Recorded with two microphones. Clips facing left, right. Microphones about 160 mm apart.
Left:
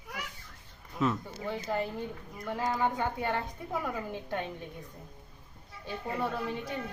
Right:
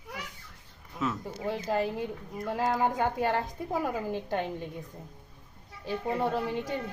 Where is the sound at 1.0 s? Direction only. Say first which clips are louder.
Left 1 dB; 5° right (ahead or behind).